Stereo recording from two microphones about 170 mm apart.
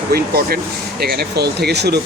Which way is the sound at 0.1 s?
65° right (ahead or behind).